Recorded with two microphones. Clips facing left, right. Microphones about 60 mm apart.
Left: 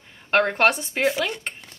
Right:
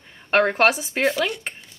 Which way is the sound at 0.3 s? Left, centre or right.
Centre.